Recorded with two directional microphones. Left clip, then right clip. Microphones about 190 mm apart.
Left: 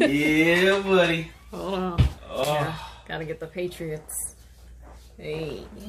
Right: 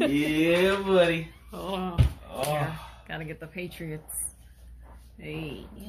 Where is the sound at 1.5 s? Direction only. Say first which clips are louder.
Left 4 dB; 25° left (ahead or behind).